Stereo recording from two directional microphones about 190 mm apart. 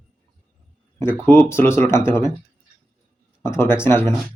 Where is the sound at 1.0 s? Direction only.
10° left (ahead or behind).